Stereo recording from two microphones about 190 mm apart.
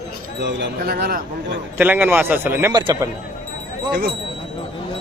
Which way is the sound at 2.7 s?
20° right (ahead or behind).